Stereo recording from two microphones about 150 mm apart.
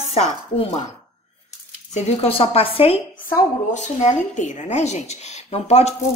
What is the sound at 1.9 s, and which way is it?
A woman's voice, 40° left (ahead or behind).